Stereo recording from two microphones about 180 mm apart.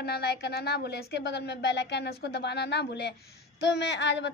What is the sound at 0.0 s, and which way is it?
Speech, 65° left (ahead or behind).